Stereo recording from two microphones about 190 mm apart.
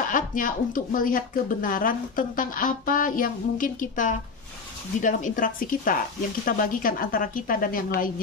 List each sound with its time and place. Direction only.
0.0 s speech: 45° left (ahead or behind)